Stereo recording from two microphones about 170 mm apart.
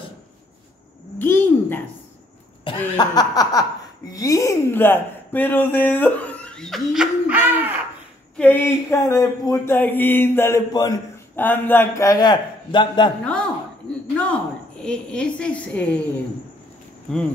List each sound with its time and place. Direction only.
1.1 s a sound: 10° left (ahead or behind)
3.0 s a man's voice: 20° left (ahead or behind); by 7.7 s 10° right (ahead or behind)
8.4 s speech: 10° left (ahead or behind)
11.3 s a man's voice: 10° left (ahead or behind); by 13.1 s 25° left (ahead or behind)
14.1 s speech: 5° left (ahead or behind)
17.1 s speech: 5° left (ahead or behind)